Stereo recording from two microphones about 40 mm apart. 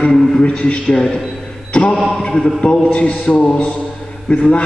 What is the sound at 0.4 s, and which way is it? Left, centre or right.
Speech, left.